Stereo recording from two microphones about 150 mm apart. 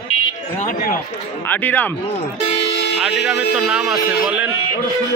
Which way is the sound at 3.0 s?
5° right (ahead or behind).